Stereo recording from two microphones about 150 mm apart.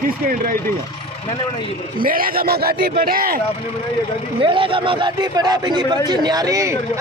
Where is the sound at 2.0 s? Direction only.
70° right (ahead or behind).